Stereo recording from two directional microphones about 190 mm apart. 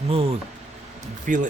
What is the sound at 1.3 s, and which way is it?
Speech, 45° right (ahead or behind).